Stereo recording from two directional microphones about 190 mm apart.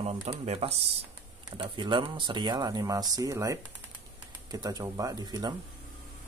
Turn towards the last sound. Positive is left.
turn(degrees=-20)  # may be behind; listen again after turning